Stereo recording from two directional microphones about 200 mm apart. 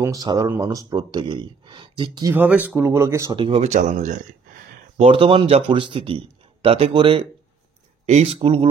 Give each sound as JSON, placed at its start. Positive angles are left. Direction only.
{"t": 0.0, "sound": "speech", "side_deg": -15}
{"t": 2.3, "sound": "speech", "side_deg": -10}
{"t": 3.3, "sound": "speech", "side_deg": -30}
{"t": 5.0, "sound": "speech", "side_deg": -25}